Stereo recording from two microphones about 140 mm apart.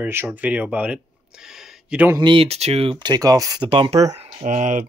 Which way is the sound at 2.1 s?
35° right (ahead or behind).